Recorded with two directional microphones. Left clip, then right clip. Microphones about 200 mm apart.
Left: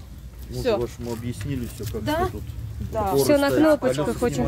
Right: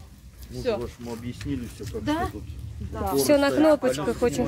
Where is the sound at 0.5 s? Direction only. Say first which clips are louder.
Left 4 dB; 55° left (ahead or behind).